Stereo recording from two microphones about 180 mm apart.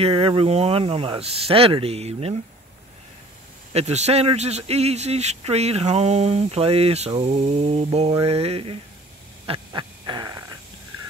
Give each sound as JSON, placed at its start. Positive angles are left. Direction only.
{"t": 0.0, "sound": "speech", "side_deg": -30}
{"t": 3.7, "sound": "speech", "side_deg": -40}
{"t": 9.5, "sound": "a sound", "side_deg": -25}